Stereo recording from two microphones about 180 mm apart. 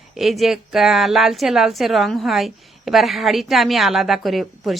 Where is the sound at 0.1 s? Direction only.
Centre (ahead or behind).